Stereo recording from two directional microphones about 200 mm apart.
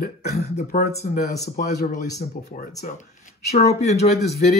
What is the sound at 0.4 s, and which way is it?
Speech, 40° left (ahead or behind).